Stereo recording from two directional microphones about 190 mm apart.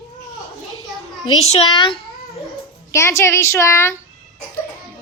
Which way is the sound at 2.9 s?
15° left (ahead or behind).